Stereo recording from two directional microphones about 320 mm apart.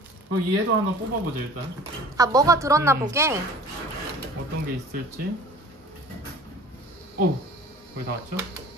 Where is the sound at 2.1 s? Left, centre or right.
Centre.